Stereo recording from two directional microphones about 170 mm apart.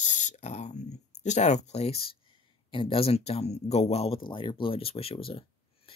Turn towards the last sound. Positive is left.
turn(degrees=30)  # may be behind; listen again after turning